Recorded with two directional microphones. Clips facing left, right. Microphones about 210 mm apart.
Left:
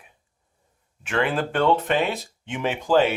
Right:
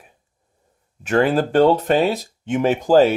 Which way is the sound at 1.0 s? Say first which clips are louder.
Right 7 dB; 40° right (ahead or behind).